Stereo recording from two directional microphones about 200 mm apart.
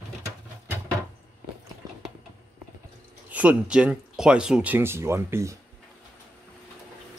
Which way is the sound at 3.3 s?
5° right (ahead or behind).